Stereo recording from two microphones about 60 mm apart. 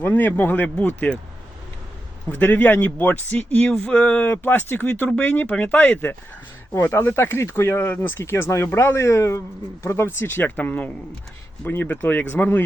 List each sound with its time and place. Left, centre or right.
0.0 s speech: left
2.3 s speech: left
3.7 s speech: centre; by 8.1 s left
8.2 s speech: left
9.8 s speech: left